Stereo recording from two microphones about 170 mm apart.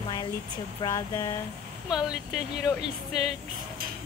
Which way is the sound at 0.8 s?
20° left (ahead or behind).